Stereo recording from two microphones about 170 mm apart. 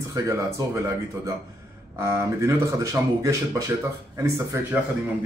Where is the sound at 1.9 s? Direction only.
15° right (ahead or behind).